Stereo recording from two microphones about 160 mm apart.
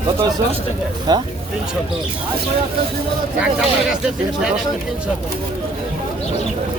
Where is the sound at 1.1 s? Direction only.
25° right (ahead or behind).